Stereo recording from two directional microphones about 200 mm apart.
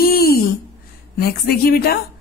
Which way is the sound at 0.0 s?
50° left (ahead or behind).